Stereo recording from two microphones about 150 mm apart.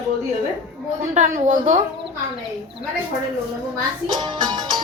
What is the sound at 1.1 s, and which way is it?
Speech, 55° right (ahead or behind).